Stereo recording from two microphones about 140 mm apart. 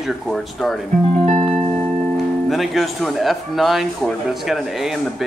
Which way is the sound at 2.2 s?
Centre (ahead or behind).